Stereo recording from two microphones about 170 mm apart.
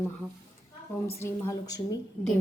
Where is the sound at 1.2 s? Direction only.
15° left (ahead or behind).